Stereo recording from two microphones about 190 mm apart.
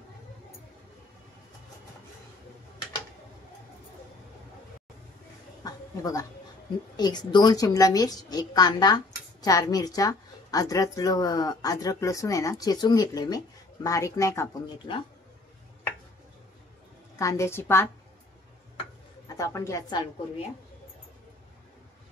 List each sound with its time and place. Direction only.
5.6 s a sound: 20° left (ahead or behind)
7.0 s a woman's voice: 20° left (ahead or behind)
14.9 s a woman's voice: 25° left (ahead or behind)
17.2 s speech: 15° left (ahead or behind)
19.2 s a woman's voice: 15° left (ahead or behind)